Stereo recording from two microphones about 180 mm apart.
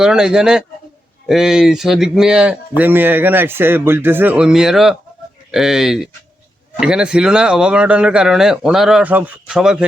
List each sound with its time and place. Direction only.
0.0 s speech: 5° right (ahead or behind)